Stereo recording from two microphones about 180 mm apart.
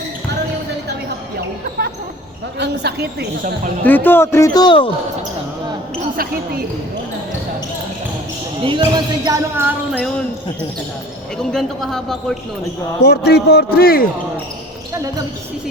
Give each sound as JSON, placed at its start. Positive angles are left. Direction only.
{"t": 2.6, "sound": "a woman's voice", "side_deg": -65}
{"t": 3.8, "sound": "speech", "side_deg": 10}
{"t": 8.6, "sound": "speech", "side_deg": -25}
{"t": 9.6, "sound": "a sound", "side_deg": -10}
{"t": 11.5, "sound": "a man's voice", "side_deg": 0}
{"t": 13.1, "sound": "a man's voice", "side_deg": 65}